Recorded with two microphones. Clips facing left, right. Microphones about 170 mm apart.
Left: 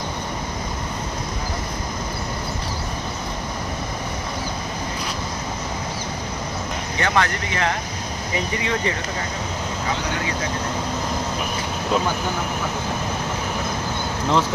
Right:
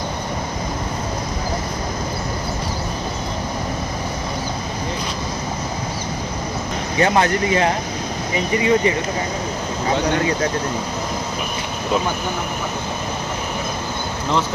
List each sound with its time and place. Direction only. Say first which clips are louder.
7.0 s speech: right 6 dB; 25° right (ahead or behind)
8.6 s speech: right 10 dB; 15° right (ahead or behind)